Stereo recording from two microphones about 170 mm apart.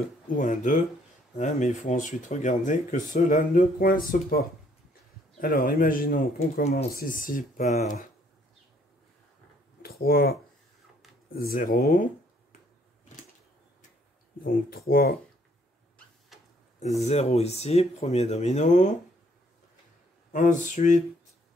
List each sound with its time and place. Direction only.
0.3 s speech: 50° left (ahead or behind)
9.8 s speech: 65° left (ahead or behind)
11.3 s speech: 60° left (ahead or behind)
14.4 s speech: 60° left (ahead or behind)
17.0 s speech: 40° left (ahead or behind)
20.3 s speech: 50° left (ahead or behind)